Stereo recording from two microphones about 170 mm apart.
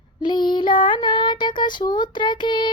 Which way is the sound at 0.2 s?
25° left (ahead or behind).